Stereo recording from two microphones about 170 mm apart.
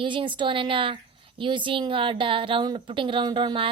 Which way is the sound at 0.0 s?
30° right (ahead or behind).